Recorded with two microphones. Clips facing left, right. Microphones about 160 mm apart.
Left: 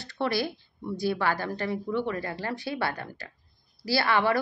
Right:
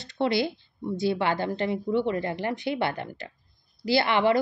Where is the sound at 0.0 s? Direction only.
20° right (ahead or behind).